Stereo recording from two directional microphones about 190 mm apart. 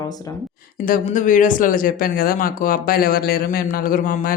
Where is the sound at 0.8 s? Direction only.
45° left (ahead or behind).